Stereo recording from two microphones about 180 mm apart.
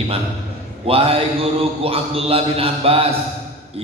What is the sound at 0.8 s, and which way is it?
A man's voice, 30° right (ahead or behind).